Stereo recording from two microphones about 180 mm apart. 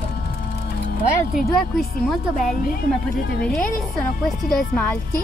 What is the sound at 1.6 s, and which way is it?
Speech, centre (ahead or behind).